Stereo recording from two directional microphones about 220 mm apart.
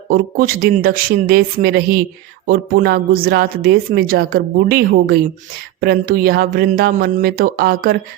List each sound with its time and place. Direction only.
0.1 s speech: 40° right (ahead or behind)